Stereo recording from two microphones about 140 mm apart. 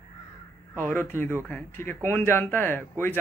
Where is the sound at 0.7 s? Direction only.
15° left (ahead or behind).